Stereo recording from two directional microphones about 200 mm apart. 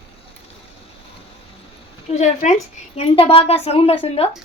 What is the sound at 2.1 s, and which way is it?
A woman's voice, 35° left (ahead or behind).